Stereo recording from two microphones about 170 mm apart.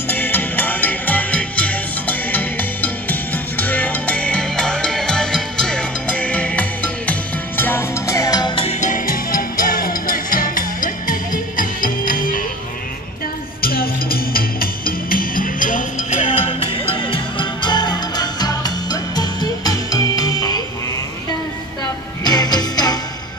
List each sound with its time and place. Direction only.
0.1 s music: 10° left (ahead or behind)
8.6 s music: 50° left (ahead or behind)
13.6 s music: 60° left (ahead or behind)
16.3 s music: 30° left (ahead or behind)
22.2 s music: 25° left (ahead or behind)